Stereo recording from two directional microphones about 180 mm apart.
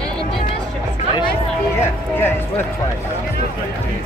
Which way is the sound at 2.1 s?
10° left (ahead or behind).